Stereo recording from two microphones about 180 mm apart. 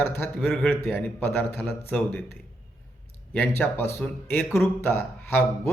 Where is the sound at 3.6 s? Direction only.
10° left (ahead or behind).